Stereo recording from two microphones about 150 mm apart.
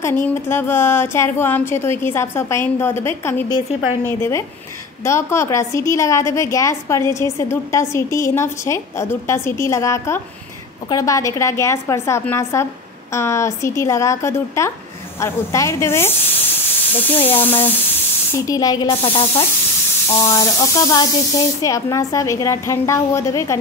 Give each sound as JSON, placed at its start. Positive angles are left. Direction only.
{"t": 0.0, "sound": "a woman's voice", "side_deg": 15}
{"t": 17.1, "sound": "a woman's voice", "side_deg": 15}
{"t": 18.5, "sound": "a woman's voice", "side_deg": 25}
{"t": 20.2, "sound": "a woman's voice", "side_deg": 20}